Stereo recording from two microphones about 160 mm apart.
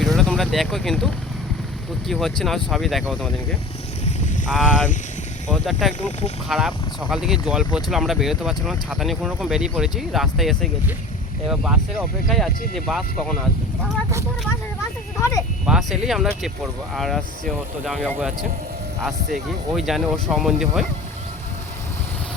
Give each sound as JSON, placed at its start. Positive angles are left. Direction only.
{"t": 0.2, "sound": "speech", "side_deg": 0}
{"t": 5.5, "sound": "speech", "side_deg": 0}
{"t": 15.2, "sound": "speech", "side_deg": 20}
{"t": 15.6, "sound": "speech", "side_deg": -5}